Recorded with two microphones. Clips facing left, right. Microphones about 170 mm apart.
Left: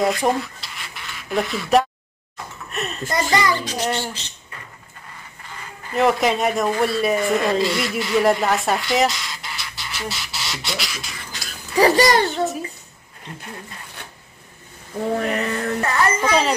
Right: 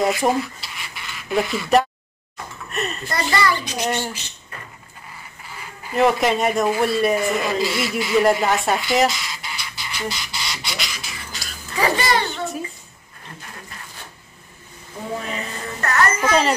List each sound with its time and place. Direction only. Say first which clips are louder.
0.0 s dishes: even; centre (ahead or behind)
2.7 s speech: right 2 dB; centre (ahead or behind)
3.1 s a child's voice: left 2 dB; 20° left (ahead or behind)
3.6 s speech: even; 15° right (ahead or behind)
5.9 s speech: even; centre (ahead or behind)
11.8 s a child's voice: left 5 dB; 40° left (ahead or behind)
15.1 s speech: left 6 dB; 65° left (ahead or behind)
16.2 s a woman's voice: right 1 dB; centre (ahead or behind)